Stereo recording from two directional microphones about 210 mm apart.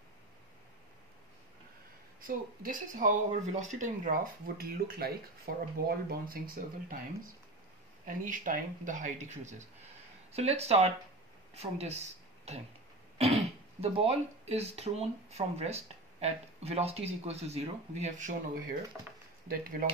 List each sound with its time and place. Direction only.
2.2 s speech: 40° right (ahead or behind)
8.0 s speech: 40° right (ahead or behind)
18.9 s speech: 5° right (ahead or behind)